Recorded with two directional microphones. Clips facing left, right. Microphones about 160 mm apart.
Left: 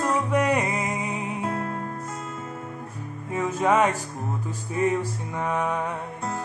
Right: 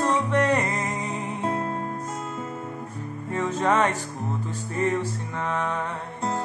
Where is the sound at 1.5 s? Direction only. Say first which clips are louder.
Right 5 dB; 25° right (ahead or behind).